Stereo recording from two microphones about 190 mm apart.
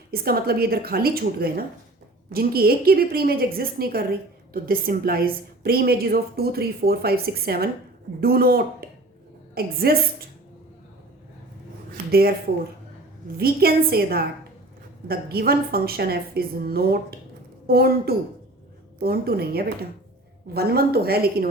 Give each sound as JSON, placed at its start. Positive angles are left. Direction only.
{"t": 0.1, "sound": "a woman's voice", "side_deg": -55}
{"t": 8.8, "sound": "a sound", "side_deg": -50}
{"t": 9.6, "sound": "a woman's voice", "side_deg": -50}
{"t": 13.3, "sound": "a woman's voice", "side_deg": -55}